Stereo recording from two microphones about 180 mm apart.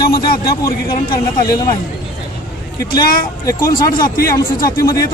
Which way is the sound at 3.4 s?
20° left (ahead or behind).